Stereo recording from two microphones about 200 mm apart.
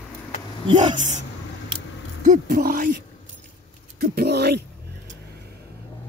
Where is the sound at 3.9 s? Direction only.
50° right (ahead or behind).